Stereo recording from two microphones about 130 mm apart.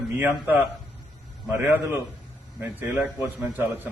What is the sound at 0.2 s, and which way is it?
Speech, 15° right (ahead or behind).